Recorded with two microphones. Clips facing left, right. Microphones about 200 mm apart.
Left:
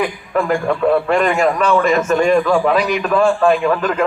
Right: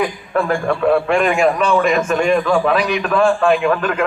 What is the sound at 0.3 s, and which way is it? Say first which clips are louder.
Speech: left 1 dB; 15° left (ahead or behind).